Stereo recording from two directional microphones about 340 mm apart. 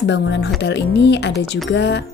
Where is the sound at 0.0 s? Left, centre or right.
Left.